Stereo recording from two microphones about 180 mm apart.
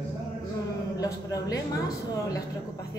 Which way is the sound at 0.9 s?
20° left (ahead or behind).